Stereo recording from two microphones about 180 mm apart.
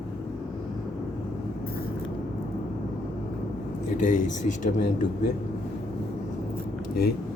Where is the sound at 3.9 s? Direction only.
45° left (ahead or behind).